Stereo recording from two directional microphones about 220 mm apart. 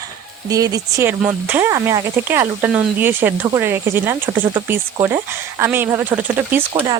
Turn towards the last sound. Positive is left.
turn(degrees=-20)  # may be behind; listen again after turning